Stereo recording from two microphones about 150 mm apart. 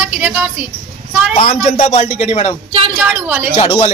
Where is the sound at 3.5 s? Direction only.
40° left (ahead or behind).